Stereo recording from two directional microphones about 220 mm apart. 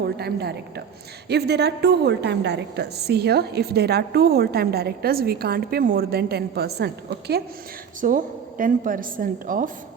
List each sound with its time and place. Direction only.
0.0 s a woman's voice: 45° right (ahead or behind)